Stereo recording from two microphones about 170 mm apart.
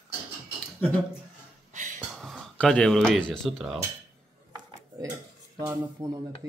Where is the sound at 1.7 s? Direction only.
45° right (ahead or behind).